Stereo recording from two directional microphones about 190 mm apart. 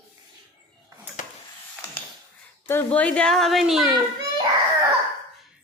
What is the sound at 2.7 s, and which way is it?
A woman's voice, 10° left (ahead or behind).